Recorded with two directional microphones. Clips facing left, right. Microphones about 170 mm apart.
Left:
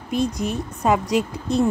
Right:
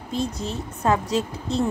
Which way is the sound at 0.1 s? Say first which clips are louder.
Left 5 dB; 15° left (ahead or behind).